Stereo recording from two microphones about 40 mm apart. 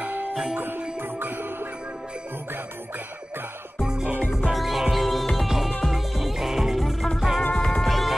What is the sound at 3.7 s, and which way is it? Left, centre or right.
Music, centre.